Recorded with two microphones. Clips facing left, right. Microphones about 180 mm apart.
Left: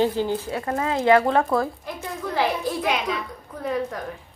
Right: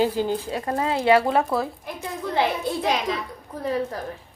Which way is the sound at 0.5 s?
25° right (ahead or behind).